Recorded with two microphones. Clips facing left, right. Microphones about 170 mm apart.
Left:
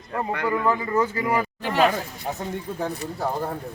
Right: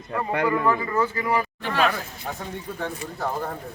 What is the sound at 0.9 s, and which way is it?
Speech, 15° left (ahead or behind).